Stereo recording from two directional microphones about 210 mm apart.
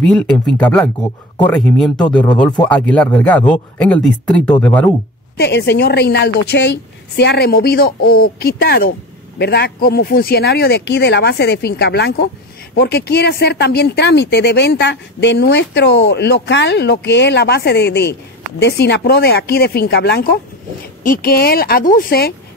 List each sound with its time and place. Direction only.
0.0 s speech: 5° left (ahead or behind)
5.4 s speech: 55° left (ahead or behind)